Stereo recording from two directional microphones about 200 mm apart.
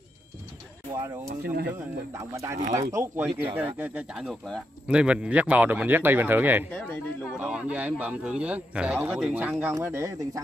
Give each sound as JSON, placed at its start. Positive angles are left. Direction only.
{"t": 0.9, "sound": "speech", "side_deg": -15}
{"t": 1.4, "sound": "speech", "side_deg": -50}
{"t": 1.7, "sound": "speech", "side_deg": -15}
{"t": 6.7, "sound": "speech", "side_deg": 10}
{"t": 7.3, "sound": "speech", "side_deg": -5}